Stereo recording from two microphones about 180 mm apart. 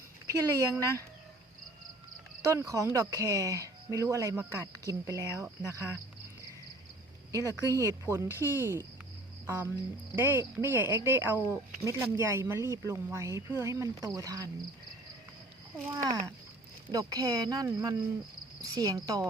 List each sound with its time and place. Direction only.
0.3 s speech: 20° right (ahead or behind)
2.4 s speech: 20° right (ahead or behind)
7.3 s speech: 20° right (ahead or behind)
10.2 s speech: 10° right (ahead or behind)
16.0 s speech: 15° right (ahead or behind)